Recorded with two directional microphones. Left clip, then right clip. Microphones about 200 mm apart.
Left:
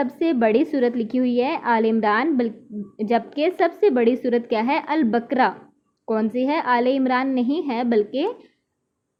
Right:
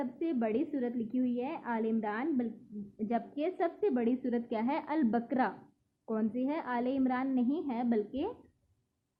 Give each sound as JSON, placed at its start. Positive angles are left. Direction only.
{"t": 0.0, "sound": "a woman's voice", "side_deg": 25}